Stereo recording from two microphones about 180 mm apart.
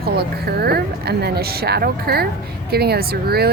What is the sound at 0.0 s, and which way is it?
Speech, 60° right (ahead or behind).